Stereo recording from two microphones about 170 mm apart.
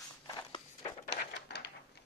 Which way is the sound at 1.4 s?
75° left (ahead or behind).